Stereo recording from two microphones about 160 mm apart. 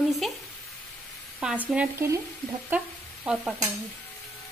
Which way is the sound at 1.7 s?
5° right (ahead or behind).